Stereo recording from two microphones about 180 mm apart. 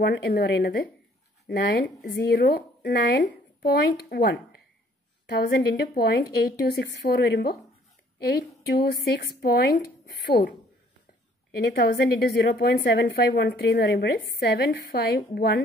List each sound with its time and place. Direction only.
0.0 s a woman's voice: 65° left (ahead or behind)
8.6 s a woman's voice: 60° left (ahead or behind)
11.6 s a woman's voice: 65° left (ahead or behind)